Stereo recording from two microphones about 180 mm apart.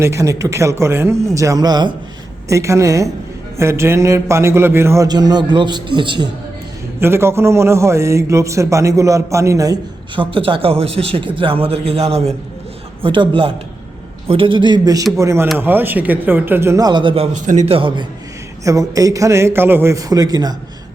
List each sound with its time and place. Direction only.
0.0 s a man's voice: 15° right (ahead or behind)
7.0 s a man's voice: 15° right (ahead or behind)
10.2 s a man's voice: 30° right (ahead or behind)
17.3 s speech: 40° right (ahead or behind)
18.6 s a man's voice: 20° right (ahead or behind)